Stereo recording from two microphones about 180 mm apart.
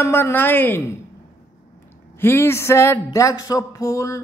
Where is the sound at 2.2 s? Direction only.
15° left (ahead or behind).